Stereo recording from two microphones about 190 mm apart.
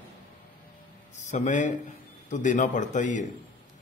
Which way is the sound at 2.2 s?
40° left (ahead or behind).